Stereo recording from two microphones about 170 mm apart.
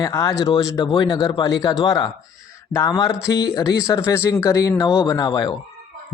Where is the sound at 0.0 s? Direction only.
20° left (ahead or behind).